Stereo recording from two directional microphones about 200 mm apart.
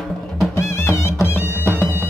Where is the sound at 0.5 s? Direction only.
15° left (ahead or behind).